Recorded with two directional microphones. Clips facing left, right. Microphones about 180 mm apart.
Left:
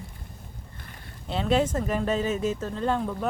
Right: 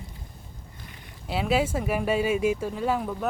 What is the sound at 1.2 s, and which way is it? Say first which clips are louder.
Speech: left 1 dB; 5° right (ahead or behind).